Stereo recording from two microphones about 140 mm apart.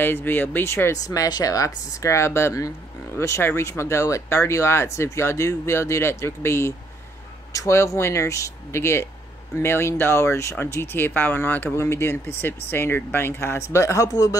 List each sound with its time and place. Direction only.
0.0 s speech: 15° left (ahead or behind)